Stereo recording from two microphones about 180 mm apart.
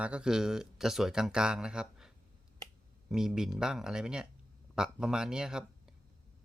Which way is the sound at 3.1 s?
5° right (ahead or behind).